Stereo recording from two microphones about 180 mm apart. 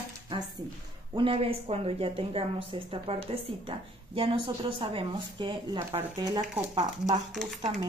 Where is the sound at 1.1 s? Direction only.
30° right (ahead or behind).